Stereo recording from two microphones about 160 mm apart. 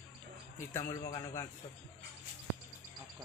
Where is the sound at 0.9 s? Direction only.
15° left (ahead or behind).